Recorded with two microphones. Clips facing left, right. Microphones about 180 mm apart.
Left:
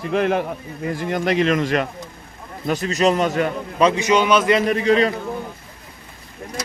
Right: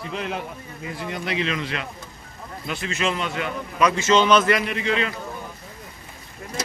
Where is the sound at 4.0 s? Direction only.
10° left (ahead or behind).